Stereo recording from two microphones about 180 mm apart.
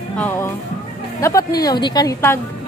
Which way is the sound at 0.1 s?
10° left (ahead or behind).